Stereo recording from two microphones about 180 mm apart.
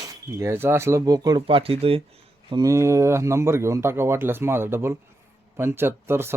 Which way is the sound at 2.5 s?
20° right (ahead or behind).